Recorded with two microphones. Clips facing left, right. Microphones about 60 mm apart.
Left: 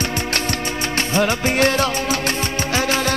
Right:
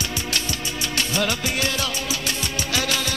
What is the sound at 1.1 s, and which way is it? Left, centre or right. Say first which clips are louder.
Music: left 8 dB; left.